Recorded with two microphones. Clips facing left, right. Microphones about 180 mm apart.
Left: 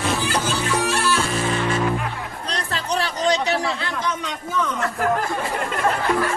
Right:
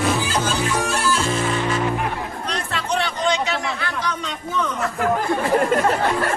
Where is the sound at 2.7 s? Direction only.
35° left (ahead or behind).